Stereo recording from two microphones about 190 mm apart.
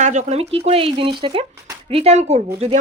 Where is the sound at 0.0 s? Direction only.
40° right (ahead or behind).